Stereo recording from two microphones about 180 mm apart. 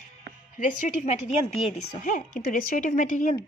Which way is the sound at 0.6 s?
45° left (ahead or behind).